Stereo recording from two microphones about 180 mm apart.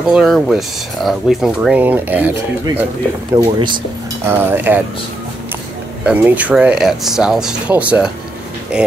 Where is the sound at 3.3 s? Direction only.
25° right (ahead or behind).